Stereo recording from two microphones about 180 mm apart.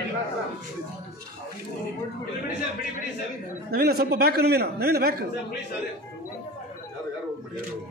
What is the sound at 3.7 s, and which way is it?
A man's voice, 60° right (ahead or behind).